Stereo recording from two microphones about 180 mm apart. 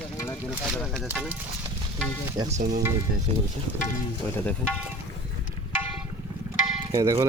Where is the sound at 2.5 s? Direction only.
45° right (ahead or behind).